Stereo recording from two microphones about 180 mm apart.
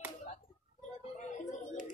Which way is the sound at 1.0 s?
45° left (ahead or behind).